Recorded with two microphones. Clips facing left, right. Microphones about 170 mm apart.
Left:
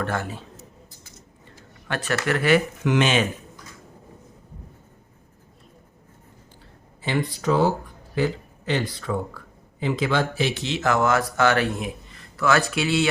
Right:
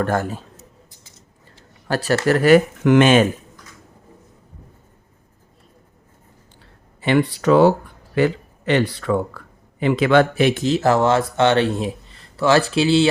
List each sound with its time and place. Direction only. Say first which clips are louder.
0.0 s speech: right 6 dB; 45° right (ahead or behind)
1.5 s a sound: right 6 dB; 35° right (ahead or behind)
2.2 s speech: right 7 dB; 40° right (ahead or behind)
7.0 s speech: right 7 dB; 70° right (ahead or behind); by 13.1 s 30° right (ahead or behind)